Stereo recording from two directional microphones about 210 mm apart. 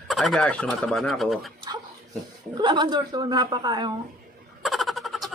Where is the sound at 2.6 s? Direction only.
20° right (ahead or behind).